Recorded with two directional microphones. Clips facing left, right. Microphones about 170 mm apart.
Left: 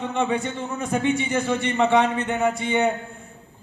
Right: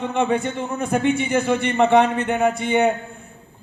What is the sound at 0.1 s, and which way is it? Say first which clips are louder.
A man's voice: right 3 dB; 55° right (ahead or behind).